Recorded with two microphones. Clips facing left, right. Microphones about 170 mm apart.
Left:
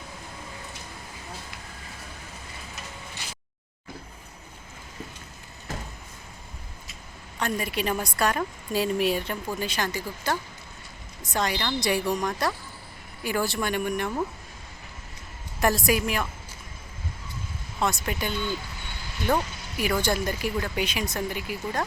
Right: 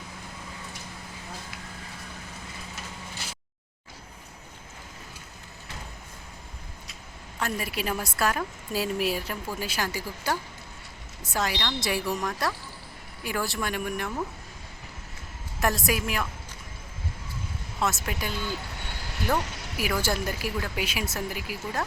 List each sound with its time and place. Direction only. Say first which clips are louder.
7.3 s a woman's voice: left 3 dB; 5° right (ahead or behind)
15.6 s a woman's voice: left 3 dB; centre (ahead or behind)
17.7 s a woman's voice: left 2 dB; centre (ahead or behind)
19.7 s a woman's voice: left 3 dB; 5° right (ahead or behind)